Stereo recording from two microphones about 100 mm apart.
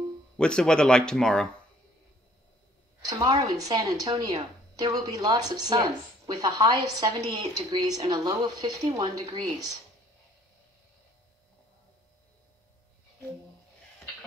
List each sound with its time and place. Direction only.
0.4 s speech: 10° left (ahead or behind)
3.1 s a woman's voice: 40° right (ahead or behind)